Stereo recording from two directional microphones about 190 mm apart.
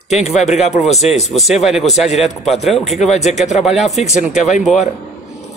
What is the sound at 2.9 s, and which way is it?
Speech, 35° left (ahead or behind).